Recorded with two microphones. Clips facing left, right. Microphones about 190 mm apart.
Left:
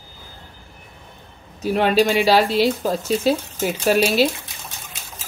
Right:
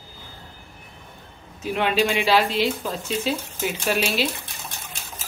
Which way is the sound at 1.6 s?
40° left (ahead or behind).